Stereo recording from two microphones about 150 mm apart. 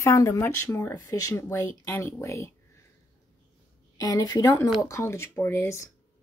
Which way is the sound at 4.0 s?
25° left (ahead or behind).